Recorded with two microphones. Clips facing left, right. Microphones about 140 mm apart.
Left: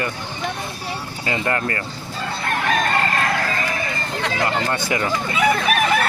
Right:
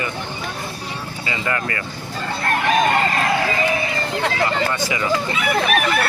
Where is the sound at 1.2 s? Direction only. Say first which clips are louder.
Left 2 dB; 45° left (ahead or behind).